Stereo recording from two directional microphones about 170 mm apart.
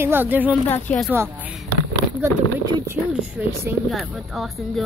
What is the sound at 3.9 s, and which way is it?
Speech, centre (ahead or behind).